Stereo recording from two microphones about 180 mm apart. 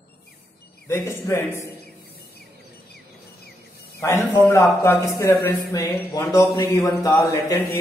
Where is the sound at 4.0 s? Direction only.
15° left (ahead or behind).